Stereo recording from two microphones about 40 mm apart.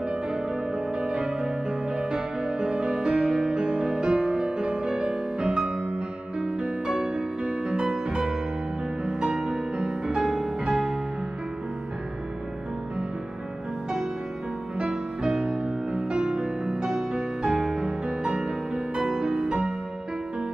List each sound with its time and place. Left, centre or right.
0.9 s music: right
14.8 s music: centre